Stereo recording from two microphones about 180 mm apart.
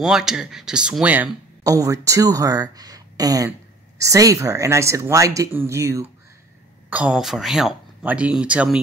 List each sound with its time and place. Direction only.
0.0 s speech: 5° right (ahead or behind)